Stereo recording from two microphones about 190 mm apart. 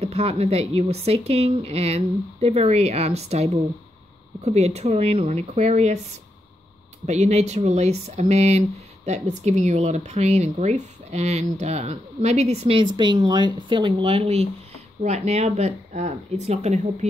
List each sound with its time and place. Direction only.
0.0 s speech: 30° right (ahead or behind)
4.5 s speech: 35° right (ahead or behind)
7.1 s speech: 35° right (ahead or behind)